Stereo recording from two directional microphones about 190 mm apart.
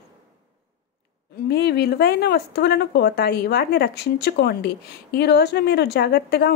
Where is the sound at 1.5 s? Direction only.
60° left (ahead or behind).